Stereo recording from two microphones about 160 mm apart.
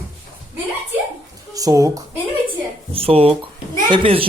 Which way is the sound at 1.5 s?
20° right (ahead or behind).